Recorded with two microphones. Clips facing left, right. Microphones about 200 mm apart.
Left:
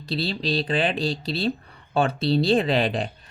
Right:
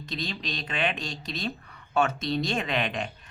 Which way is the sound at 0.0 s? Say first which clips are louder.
Left 7 dB; 35° left (ahead or behind).